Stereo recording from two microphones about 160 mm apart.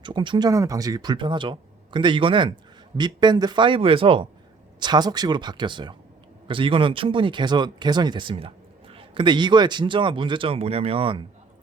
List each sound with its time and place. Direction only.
0.0 s speech: 30° right (ahead or behind)